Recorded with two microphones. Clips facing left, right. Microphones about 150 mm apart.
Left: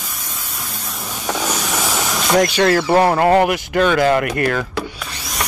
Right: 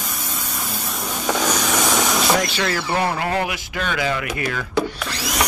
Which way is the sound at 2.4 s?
50° left (ahead or behind).